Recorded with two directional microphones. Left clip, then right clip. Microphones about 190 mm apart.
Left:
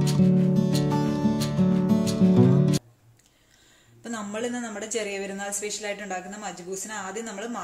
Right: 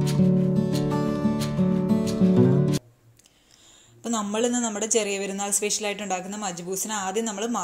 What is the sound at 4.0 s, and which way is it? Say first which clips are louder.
Speech: right 6 dB; 30° right (ahead or behind).